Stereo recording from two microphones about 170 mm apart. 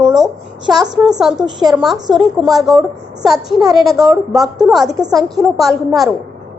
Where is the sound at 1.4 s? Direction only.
25° right (ahead or behind).